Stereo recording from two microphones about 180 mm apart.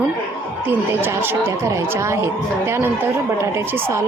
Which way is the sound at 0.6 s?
10° right (ahead or behind).